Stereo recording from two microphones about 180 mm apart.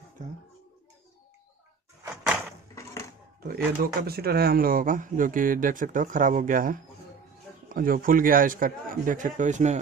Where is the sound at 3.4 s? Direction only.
55° right (ahead or behind).